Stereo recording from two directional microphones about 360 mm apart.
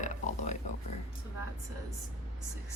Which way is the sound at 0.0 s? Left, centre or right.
Centre.